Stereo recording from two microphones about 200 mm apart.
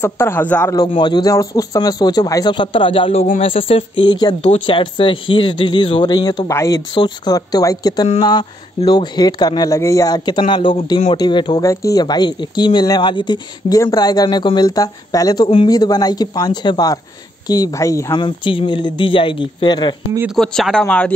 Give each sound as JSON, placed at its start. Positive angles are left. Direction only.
{"t": 0.0, "sound": "a man's voice", "side_deg": 10}
{"t": 0.7, "sound": "speech", "side_deg": 20}
{"t": 20.3, "sound": "speech", "side_deg": 5}